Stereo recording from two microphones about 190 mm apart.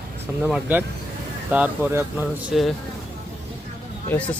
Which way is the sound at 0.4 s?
5° right (ahead or behind).